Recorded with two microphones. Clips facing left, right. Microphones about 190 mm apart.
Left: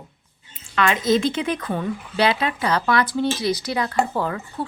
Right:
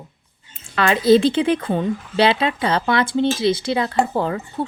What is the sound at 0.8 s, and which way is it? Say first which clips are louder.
A woman's voice: right 5 dB; 35° right (ahead or behind).